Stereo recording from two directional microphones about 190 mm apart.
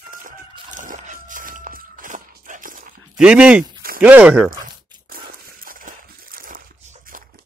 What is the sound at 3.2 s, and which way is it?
Speech, 5° right (ahead or behind).